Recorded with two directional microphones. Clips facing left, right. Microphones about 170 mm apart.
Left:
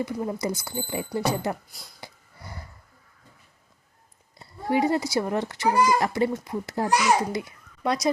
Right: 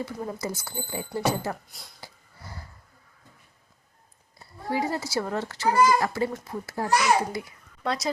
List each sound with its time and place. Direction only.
0.0 s a child's voice: 15° left (ahead or behind)
1.7 s speech: centre (ahead or behind)
2.0 s a sound: 15° left (ahead or behind)
4.4 s a child's voice: 20° left (ahead or behind)